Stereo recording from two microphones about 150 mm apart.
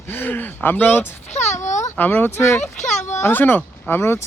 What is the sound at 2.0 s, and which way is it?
Speech, 10° left (ahead or behind).